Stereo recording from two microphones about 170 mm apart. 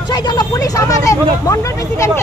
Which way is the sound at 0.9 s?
20° left (ahead or behind).